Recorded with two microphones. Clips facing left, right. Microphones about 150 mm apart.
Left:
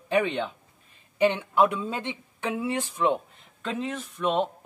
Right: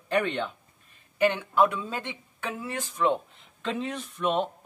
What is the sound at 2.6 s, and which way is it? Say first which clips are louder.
Speech: even; 25° left (ahead or behind).